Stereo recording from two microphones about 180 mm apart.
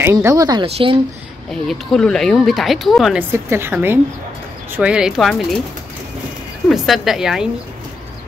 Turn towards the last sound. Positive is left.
turn(degrees=-5)  # may be behind; listen again after turning